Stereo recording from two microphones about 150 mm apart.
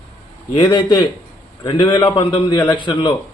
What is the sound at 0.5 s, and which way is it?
A man's voice, 35° left (ahead or behind).